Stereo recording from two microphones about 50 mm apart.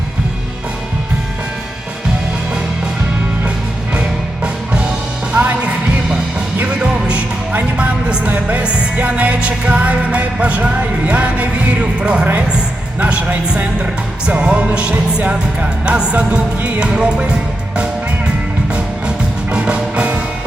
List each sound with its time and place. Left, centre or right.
4.4 s music: right
18.7 s music: right